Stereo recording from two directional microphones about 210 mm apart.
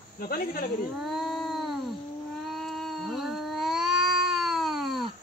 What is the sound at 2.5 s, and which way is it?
Cat, centre (ahead or behind).